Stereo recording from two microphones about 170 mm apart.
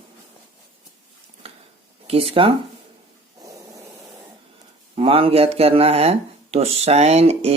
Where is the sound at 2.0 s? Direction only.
35° right (ahead or behind).